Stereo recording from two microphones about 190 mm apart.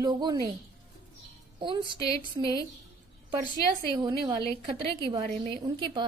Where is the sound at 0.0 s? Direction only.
20° right (ahead or behind).